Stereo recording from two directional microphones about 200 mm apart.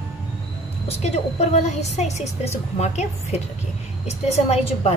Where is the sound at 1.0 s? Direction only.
35° left (ahead or behind).